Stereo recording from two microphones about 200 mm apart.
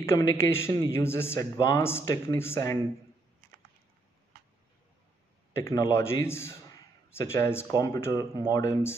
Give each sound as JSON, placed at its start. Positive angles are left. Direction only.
{"t": 0.0, "sound": "a man's voice", "side_deg": 15}
{"t": 5.5, "sound": "a man's voice", "side_deg": 15}